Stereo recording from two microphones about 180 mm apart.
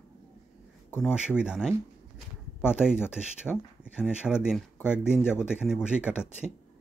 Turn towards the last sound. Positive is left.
turn(degrees=-5)  # may be behind; listen again after turning